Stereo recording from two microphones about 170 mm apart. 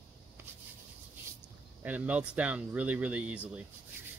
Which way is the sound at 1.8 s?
10° right (ahead or behind).